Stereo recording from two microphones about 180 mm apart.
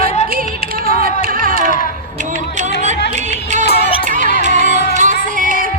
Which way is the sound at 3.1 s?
40° right (ahead or behind).